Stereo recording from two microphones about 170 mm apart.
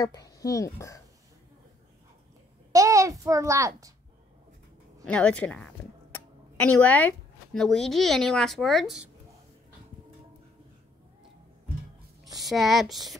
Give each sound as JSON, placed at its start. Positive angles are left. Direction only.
{"t": 0.0, "sound": "speech", "side_deg": 20}
{"t": 2.7, "sound": "a child's voice", "side_deg": -20}
{"t": 5.0, "sound": "a woman's voice", "side_deg": 5}
{"t": 12.4, "sound": "speech", "side_deg": 0}